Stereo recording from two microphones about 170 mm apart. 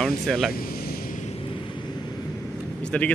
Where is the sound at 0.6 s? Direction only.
60° left (ahead or behind).